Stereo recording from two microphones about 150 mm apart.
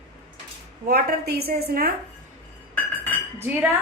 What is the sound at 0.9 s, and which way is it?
Speech, 90° right.